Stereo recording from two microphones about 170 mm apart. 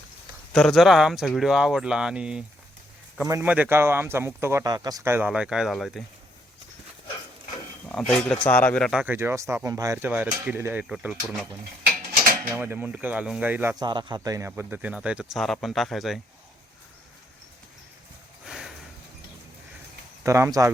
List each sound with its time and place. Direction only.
0.5 s speech: centre (ahead or behind)
3.2 s a man's voice: 20° right (ahead or behind); by 6.0 s centre (ahead or behind)
7.9 s speech: 5° left (ahead or behind)
8.9 s speech: 10° right (ahead or behind)
12.5 s speech: 10° right (ahead or behind)
13.7 s speech: 25° right (ahead or behind); by 16.2 s centre (ahead or behind)
18.4 s a sound: 5° right (ahead or behind)
20.2 s speech: 15° right (ahead or behind)